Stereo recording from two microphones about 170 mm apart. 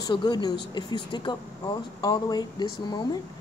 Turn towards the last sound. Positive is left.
turn(degrees=25)  # may be behind; listen again after turning